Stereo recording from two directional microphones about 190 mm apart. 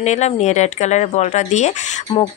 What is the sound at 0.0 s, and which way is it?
Speech, 35° left (ahead or behind).